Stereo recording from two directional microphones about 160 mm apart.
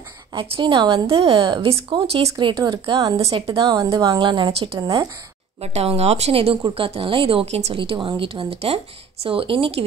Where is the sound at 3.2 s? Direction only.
40° right (ahead or behind).